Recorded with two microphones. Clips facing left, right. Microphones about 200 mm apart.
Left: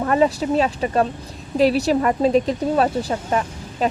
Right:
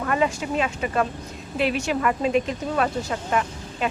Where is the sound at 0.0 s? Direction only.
35° left (ahead or behind).